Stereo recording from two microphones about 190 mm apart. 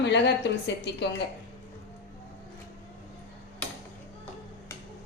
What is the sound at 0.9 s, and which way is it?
Speech, 65° left (ahead or behind).